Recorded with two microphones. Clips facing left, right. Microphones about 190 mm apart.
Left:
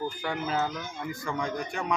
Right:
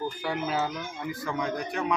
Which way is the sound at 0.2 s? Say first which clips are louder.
Right 1 dB; 5° right (ahead or behind).